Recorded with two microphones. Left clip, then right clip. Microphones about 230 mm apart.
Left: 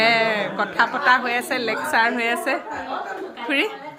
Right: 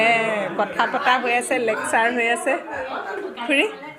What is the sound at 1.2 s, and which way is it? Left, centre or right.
Speech, left.